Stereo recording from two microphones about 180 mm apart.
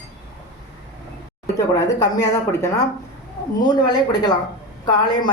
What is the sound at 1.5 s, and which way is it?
Speech, 20° left (ahead or behind).